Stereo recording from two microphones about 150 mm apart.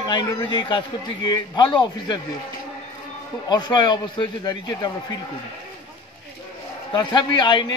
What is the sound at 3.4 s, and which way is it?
A man's voice, 30° left (ahead or behind).